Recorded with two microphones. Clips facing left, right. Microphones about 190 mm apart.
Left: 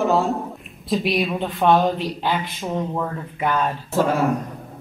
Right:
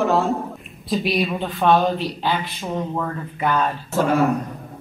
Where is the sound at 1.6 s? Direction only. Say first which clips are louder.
Even; 15° left (ahead or behind).